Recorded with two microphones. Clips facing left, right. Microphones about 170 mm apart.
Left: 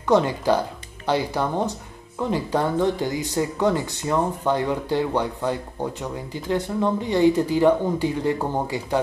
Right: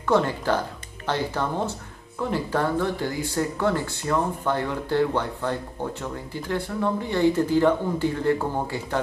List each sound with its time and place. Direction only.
0.0 s speech: 15° left (ahead or behind)